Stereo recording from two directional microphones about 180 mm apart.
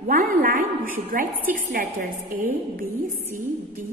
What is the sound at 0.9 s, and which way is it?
A woman's voice, 50° right (ahead or behind).